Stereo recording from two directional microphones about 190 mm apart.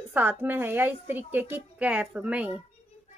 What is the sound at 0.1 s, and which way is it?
A woman's voice, 10° right (ahead or behind).